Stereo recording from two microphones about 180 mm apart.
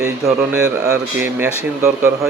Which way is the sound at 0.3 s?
5° right (ahead or behind).